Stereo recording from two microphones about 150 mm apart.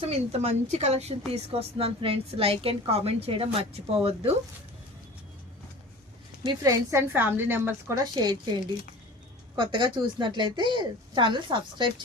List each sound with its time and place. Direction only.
0.0 s a woman's voice: 45° right (ahead or behind)
6.4 s a woman's voice: 25° right (ahead or behind)
8.1 s speech: 30° right (ahead or behind)
9.6 s a woman's voice: 30° right (ahead or behind)